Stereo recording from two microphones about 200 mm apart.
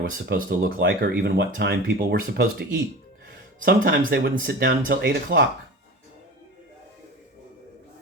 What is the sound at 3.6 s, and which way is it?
Speech, 45° right (ahead or behind).